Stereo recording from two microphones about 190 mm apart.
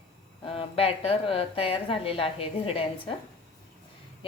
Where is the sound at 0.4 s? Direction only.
30° left (ahead or behind).